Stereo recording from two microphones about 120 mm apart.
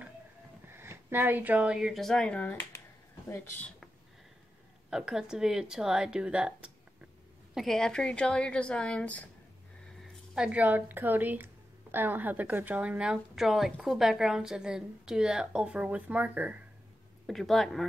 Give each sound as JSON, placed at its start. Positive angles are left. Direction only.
{"t": 0.7, "sound": "a woman's voice", "side_deg": -20}
{"t": 4.8, "sound": "speech", "side_deg": -5}
{"t": 7.5, "sound": "a woman's voice", "side_deg": 5}
{"t": 10.3, "sound": "a woman's voice", "side_deg": -10}
{"t": 17.3, "sound": "speech", "side_deg": 0}